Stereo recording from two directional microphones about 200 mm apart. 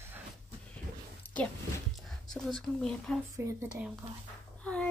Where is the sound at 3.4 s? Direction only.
10° right (ahead or behind).